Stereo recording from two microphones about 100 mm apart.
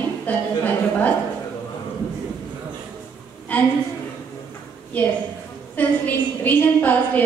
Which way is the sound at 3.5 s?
15° left (ahead or behind).